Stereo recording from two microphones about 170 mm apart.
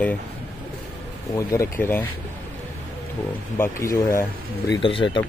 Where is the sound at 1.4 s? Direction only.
20° left (ahead or behind).